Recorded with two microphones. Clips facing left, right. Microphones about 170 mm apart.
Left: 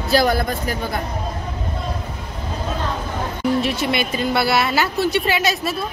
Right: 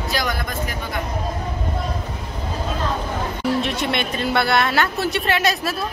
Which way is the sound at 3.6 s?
Centre (ahead or behind).